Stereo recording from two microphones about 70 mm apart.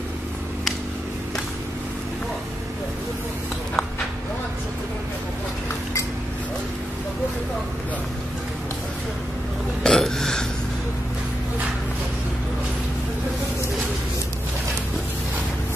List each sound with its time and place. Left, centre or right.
9.8 s burping: centre